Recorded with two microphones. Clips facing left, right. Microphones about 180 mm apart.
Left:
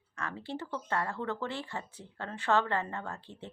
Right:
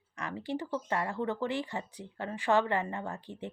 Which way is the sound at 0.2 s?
15° right (ahead or behind).